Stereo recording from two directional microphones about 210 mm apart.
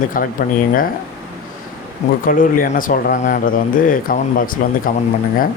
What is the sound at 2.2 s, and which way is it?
Speech, 40° left (ahead or behind).